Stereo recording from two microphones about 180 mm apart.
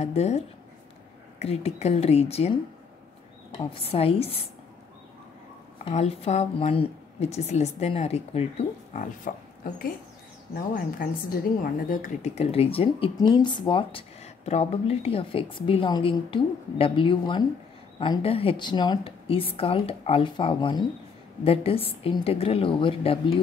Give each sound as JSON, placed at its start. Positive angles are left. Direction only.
{"t": 0.0, "sound": "a woman's voice", "side_deg": 35}
{"t": 1.4, "sound": "a woman's voice", "side_deg": 35}
{"t": 5.9, "sound": "a woman's voice", "side_deg": 35}
{"t": 9.6, "sound": "a woman's voice", "side_deg": 50}